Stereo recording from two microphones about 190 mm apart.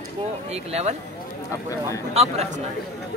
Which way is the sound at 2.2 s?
35° right (ahead or behind).